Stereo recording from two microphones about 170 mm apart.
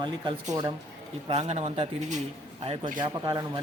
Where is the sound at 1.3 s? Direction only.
40° right (ahead or behind).